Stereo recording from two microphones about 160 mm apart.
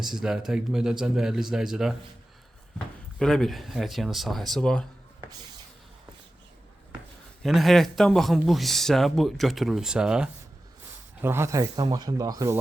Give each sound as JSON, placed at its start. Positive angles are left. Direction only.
{"t": 0.0, "sound": "speech", "side_deg": -5}
{"t": 3.2, "sound": "speech", "side_deg": 0}
{"t": 7.4, "sound": "speech", "side_deg": 0}